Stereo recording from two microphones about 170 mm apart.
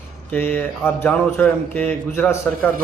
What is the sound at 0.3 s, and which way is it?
A man's voice, 10° left (ahead or behind).